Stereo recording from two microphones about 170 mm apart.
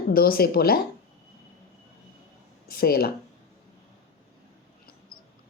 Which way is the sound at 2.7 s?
60° left (ahead or behind).